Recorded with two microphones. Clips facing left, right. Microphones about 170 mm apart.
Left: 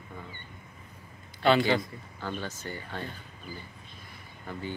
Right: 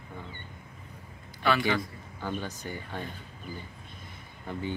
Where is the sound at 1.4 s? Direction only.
25° left (ahead or behind).